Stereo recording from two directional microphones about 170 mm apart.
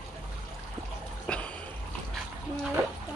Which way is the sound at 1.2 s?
5° left (ahead or behind).